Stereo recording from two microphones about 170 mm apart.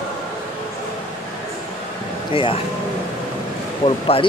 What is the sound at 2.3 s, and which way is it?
Speech, 30° left (ahead or behind).